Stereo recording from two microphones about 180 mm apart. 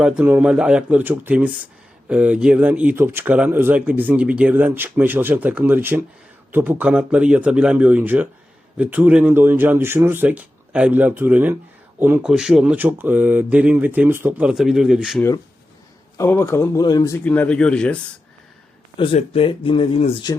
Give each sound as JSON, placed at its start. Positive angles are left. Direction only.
{"t": 0.0, "sound": "speech", "side_deg": -5}
{"t": 16.1, "sound": "speech", "side_deg": 15}
{"t": 17.2, "sound": "speech", "side_deg": 10}
{"t": 18.9, "sound": "speech", "side_deg": 30}